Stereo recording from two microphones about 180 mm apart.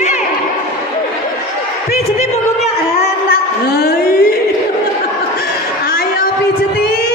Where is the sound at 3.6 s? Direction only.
60° left (ahead or behind).